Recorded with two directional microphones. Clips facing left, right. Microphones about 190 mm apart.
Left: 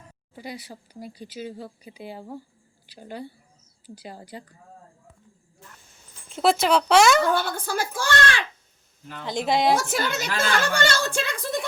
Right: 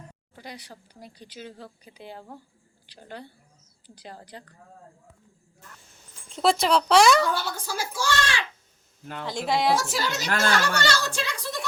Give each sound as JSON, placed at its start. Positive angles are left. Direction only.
{"t": 0.3, "sound": "speech", "side_deg": 5}
{"t": 6.3, "sound": "speech", "side_deg": 0}
{"t": 7.2, "sound": "speech", "side_deg": 55}
{"t": 9.2, "sound": "speech", "side_deg": 20}
{"t": 9.7, "sound": "a woman's voice", "side_deg": 55}